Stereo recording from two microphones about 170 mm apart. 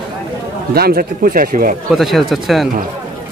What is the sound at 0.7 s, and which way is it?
Speech, 65° right (ahead or behind).